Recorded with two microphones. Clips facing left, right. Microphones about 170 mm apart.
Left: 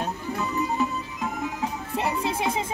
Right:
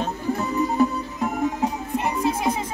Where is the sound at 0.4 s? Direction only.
45° right (ahead or behind).